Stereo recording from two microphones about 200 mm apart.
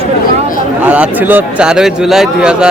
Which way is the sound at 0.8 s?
5° right (ahead or behind).